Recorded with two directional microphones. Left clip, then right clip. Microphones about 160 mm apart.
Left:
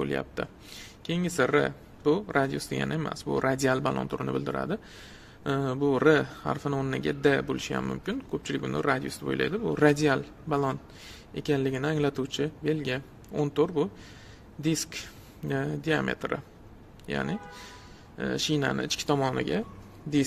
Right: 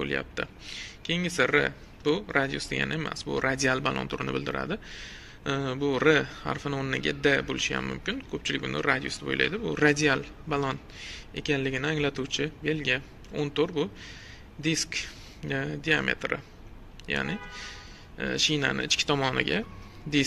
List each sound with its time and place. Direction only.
0.0 s speech: 35° left (ahead or behind)